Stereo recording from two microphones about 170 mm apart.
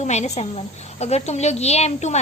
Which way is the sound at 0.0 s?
40° left (ahead or behind).